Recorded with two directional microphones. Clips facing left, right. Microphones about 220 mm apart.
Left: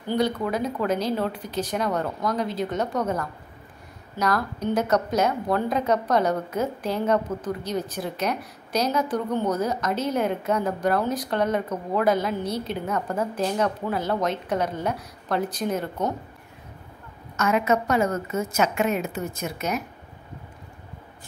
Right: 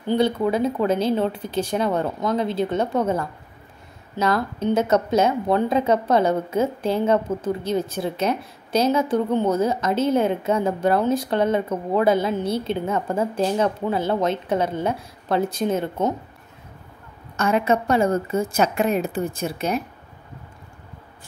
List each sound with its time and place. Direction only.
0.1 s a woman's voice: 25° right (ahead or behind)
17.4 s a woman's voice: 30° right (ahead or behind)